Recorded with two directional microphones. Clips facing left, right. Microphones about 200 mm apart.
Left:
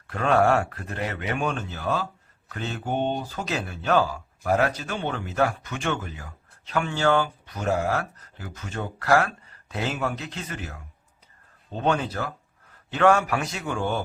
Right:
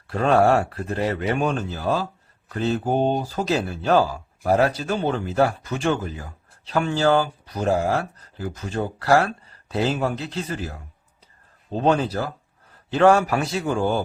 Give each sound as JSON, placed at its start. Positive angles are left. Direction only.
{"t": 0.1, "sound": "speech", "side_deg": -35}